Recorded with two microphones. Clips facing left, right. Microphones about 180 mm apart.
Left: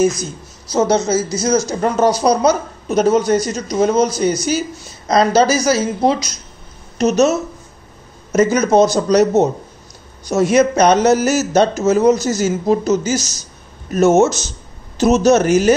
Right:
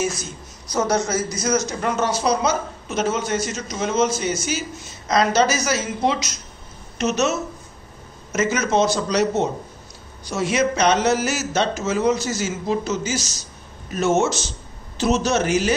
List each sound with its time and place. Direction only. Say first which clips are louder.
0.0 s a woman's voice: left 9 dB; 40° left (ahead or behind)
0.7 s a man's voice: left 6 dB; 25° left (ahead or behind); by 15.7 s 45° left (ahead or behind)